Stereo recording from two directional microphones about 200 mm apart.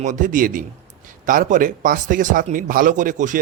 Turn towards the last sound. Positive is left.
turn(degrees=-40)  # may be behind; listen again after turning